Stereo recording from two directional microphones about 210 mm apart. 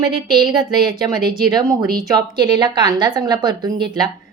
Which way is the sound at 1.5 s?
15° right (ahead or behind).